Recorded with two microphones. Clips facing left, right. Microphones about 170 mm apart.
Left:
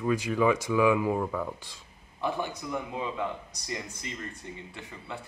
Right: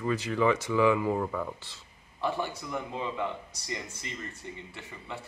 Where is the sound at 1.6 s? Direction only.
15° left (ahead or behind).